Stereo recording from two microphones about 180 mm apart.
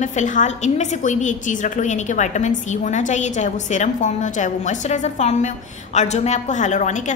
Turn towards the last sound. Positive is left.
turn(degrees=40)  # may be behind; listen again after turning